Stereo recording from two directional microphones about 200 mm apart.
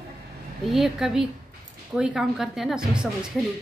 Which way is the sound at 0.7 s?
Centre (ahead or behind).